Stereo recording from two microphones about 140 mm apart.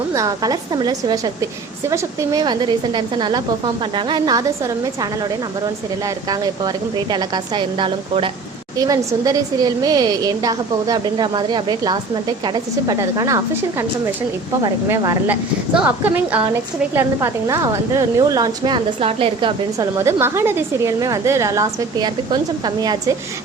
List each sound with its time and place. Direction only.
0.1 s a woman's voice: 25° right (ahead or behind)
6.2 s a woman's voice: 30° right (ahead or behind)
8.8 s a woman's voice: 25° right (ahead or behind)
14.8 s a woman's voice: 20° right (ahead or behind); by 19.9 s 35° right (ahead or behind)
20.0 s a woman's voice: 20° right (ahead or behind)